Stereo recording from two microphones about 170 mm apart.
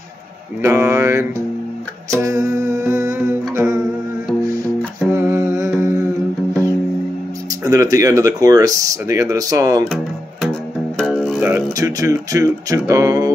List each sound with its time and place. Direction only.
0.6 s mantra: 15° right (ahead or behind)
2.1 s humming: 20° right (ahead or behind)
3.5 s music: 15° right (ahead or behind)
5.1 s humming: 15° right (ahead or behind)
7.6 s speech: 20° right (ahead or behind)
10.4 s music: 5° left (ahead or behind)
11.4 s speech: 15° right (ahead or behind)